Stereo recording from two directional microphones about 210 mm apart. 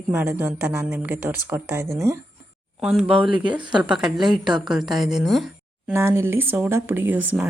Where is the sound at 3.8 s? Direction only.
5° right (ahead or behind).